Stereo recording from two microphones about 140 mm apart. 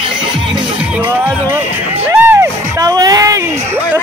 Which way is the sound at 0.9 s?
15° right (ahead or behind).